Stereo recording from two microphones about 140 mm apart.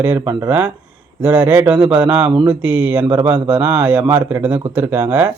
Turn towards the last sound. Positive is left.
turn(degrees=-15)  # may be behind; listen again after turning